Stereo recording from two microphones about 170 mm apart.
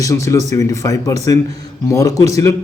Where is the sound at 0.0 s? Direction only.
20° left (ahead or behind).